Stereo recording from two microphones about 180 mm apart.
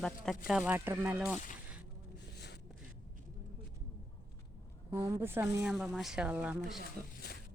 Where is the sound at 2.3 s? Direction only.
70° left (ahead or behind).